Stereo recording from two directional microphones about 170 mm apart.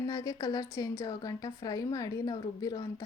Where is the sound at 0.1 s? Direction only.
20° left (ahead or behind).